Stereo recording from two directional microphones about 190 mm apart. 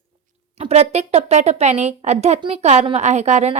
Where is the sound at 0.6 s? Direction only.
35° right (ahead or behind).